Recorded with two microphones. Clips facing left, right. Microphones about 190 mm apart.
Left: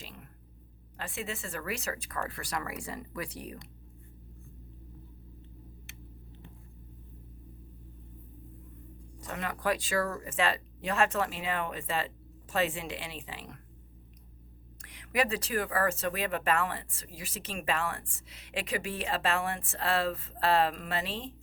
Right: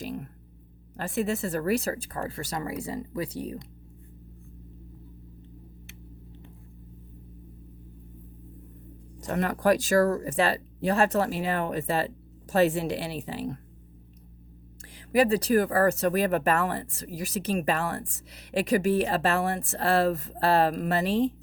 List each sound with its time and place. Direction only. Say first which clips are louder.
0.0 s a sound: right 15 dB; 40° right (ahead or behind)
0.9 s speech: right 10 dB; 40° right (ahead or behind); by 3.6 s 25° right (ahead or behind)
9.2 s speech: right 8 dB; 40° right (ahead or behind)
14.9 s speech: right 8 dB; 35° right (ahead or behind)